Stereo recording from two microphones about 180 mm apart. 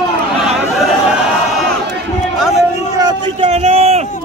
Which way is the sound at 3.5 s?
35° right (ahead or behind).